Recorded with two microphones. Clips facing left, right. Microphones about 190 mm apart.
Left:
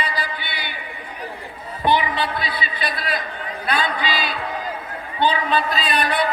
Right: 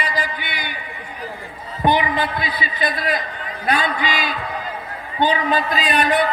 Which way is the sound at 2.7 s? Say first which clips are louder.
Right 7 dB; 45° right (ahead or behind).